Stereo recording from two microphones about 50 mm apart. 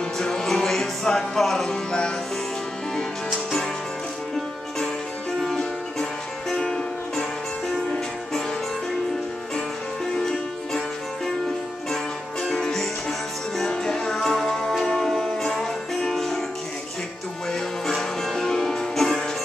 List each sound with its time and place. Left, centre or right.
0.2 s music: centre
1.7 s music: centre
6.5 s music: centre
10.1 s music: centre
11.9 s music: centre
17.5 s music: centre